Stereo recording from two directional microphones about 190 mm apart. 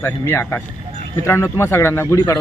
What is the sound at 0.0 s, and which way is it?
A man's voice, 15° left (ahead or behind).